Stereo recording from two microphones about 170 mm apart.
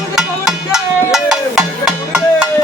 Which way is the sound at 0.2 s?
5° right (ahead or behind).